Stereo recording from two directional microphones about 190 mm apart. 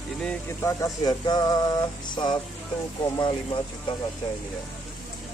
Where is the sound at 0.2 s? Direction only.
10° left (ahead or behind).